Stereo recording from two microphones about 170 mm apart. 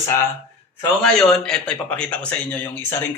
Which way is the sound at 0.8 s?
5° left (ahead or behind).